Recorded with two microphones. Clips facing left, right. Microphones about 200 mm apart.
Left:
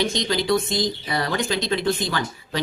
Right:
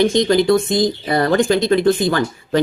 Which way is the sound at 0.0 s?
50° right (ahead or behind).